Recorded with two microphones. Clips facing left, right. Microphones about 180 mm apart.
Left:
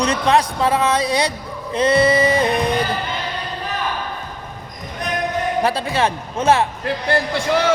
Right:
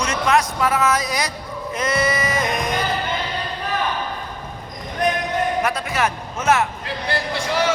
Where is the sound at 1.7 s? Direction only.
30° left (ahead or behind).